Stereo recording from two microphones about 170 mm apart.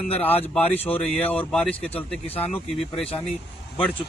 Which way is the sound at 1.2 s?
10° left (ahead or behind).